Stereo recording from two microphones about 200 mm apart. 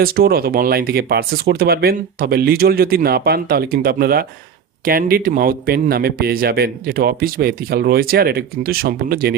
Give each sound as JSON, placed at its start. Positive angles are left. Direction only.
{"t": 0.0, "sound": "speech", "side_deg": -50}